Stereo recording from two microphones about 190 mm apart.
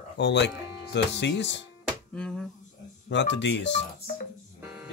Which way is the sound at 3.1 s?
70° left (ahead or behind).